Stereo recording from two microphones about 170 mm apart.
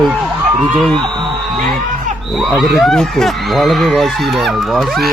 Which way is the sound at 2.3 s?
Centre (ahead or behind).